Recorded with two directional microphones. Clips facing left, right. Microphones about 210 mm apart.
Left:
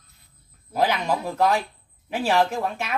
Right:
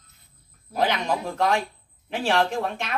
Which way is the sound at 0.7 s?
5° left (ahead or behind).